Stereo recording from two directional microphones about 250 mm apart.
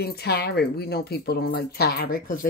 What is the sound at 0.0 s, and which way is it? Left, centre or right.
Speech, left.